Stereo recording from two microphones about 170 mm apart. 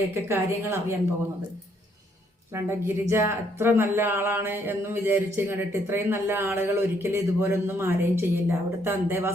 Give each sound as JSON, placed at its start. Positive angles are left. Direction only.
{"t": 0.1, "sound": "speech", "side_deg": -15}
{"t": 2.5, "sound": "speech", "side_deg": -15}